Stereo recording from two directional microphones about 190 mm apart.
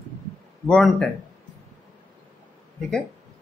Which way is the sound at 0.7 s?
5° left (ahead or behind).